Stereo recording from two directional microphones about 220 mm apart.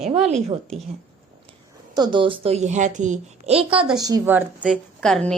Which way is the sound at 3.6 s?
5° right (ahead or behind).